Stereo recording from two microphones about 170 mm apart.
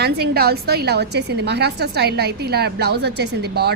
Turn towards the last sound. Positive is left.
turn(degrees=-70)  # may be behind; listen again after turning